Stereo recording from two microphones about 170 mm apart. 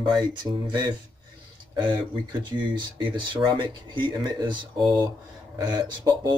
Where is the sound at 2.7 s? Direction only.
25° right (ahead or behind).